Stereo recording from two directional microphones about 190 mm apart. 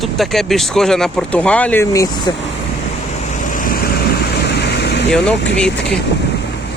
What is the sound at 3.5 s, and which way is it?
Vehicle, 45° left (ahead or behind).